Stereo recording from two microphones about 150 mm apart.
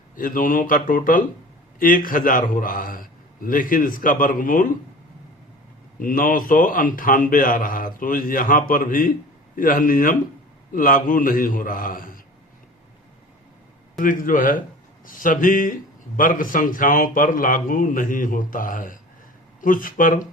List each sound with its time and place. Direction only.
0.2 s a man's voice: 65° left (ahead or behind)
6.0 s a man's voice: 65° left (ahead or behind)
14.0 s a man's voice: 65° left (ahead or behind)